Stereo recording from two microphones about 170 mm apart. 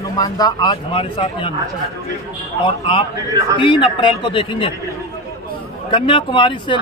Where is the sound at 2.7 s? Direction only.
30° left (ahead or behind).